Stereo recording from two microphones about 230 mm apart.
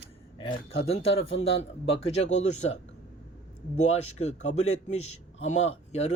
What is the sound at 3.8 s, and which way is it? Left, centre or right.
A man's voice, left.